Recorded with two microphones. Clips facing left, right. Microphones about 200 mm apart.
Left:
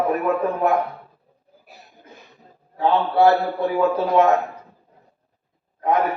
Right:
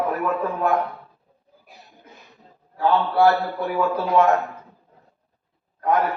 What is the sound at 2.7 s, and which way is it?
A man's voice, 20° left (ahead or behind).